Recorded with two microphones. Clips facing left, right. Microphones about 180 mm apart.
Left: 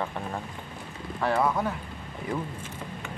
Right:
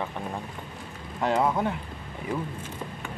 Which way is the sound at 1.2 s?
20° right (ahead or behind).